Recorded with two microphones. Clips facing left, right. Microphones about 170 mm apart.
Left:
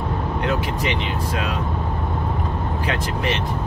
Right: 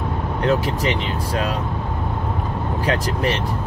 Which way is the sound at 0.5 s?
35° right (ahead or behind).